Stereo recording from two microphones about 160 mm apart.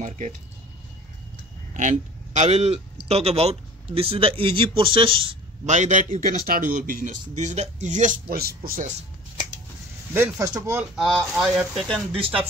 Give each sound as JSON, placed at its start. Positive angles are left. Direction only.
{"t": 0.0, "sound": "speech", "side_deg": -50}
{"t": 1.7, "sound": "a man's voice", "side_deg": -50}
{"t": 5.8, "sound": "speech", "side_deg": -50}
{"t": 10.1, "sound": "speech", "side_deg": -15}
{"t": 11.0, "sound": "speech", "side_deg": 0}